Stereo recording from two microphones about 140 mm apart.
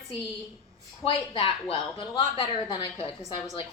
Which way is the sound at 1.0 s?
40° left (ahead or behind).